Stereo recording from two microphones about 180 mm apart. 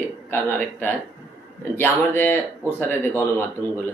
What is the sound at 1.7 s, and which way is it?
Speech, 10° left (ahead or behind).